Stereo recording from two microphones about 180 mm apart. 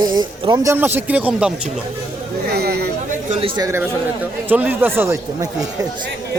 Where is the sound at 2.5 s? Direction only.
60° right (ahead or behind).